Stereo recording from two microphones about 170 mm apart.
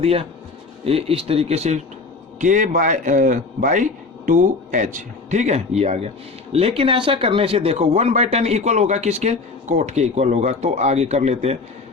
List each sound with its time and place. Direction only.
0.0 s a man's voice: 35° right (ahead or behind)